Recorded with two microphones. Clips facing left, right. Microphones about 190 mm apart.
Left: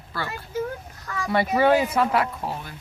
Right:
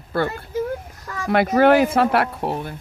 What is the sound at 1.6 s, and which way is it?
Speech, 70° right (ahead or behind).